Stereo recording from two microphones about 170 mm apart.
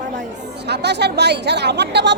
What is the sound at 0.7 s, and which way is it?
A woman's voice, 80° right.